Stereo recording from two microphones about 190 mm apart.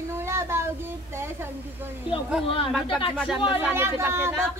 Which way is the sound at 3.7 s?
10° right (ahead or behind).